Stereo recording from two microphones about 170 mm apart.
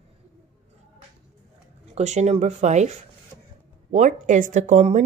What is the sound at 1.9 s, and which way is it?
Speech, 40° right (ahead or behind).